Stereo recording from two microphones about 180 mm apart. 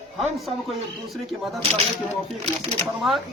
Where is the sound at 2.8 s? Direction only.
Centre (ahead or behind).